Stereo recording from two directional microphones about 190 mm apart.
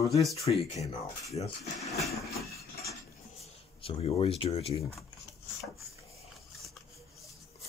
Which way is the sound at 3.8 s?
30° left (ahead or behind).